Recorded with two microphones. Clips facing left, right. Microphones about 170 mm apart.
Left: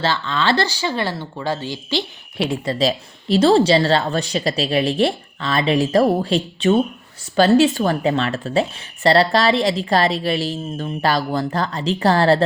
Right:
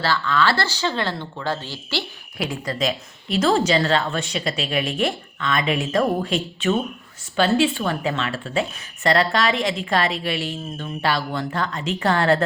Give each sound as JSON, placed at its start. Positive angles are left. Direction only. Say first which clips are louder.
{"t": 0.0, "sound": "speech", "louder": "even", "side_deg": 20}
{"t": 2.5, "sound": "speech", "louder": "left 5 dB", "side_deg": 30}